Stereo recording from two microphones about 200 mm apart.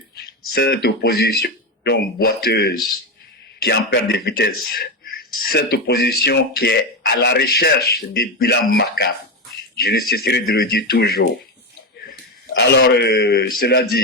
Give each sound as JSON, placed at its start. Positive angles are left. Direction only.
{"t": 0.2, "sound": "speech", "side_deg": 50}
{"t": 12.5, "sound": "speech", "side_deg": 55}